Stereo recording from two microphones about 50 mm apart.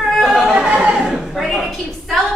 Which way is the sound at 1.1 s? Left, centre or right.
Centre.